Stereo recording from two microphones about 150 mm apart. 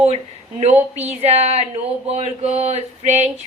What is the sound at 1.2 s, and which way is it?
Speech, 45° right (ahead or behind).